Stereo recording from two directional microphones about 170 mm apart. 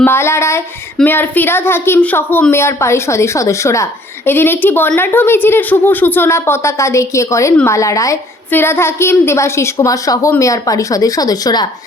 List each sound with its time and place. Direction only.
0.0 s a woman's voice: 15° left (ahead or behind)